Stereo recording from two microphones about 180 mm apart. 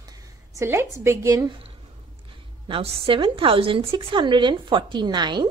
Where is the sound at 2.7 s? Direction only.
30° right (ahead or behind).